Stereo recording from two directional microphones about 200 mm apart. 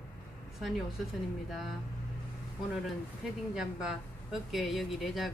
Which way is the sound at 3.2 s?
5° right (ahead or behind).